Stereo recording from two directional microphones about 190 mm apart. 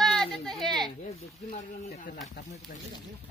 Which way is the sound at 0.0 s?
Centre (ahead or behind).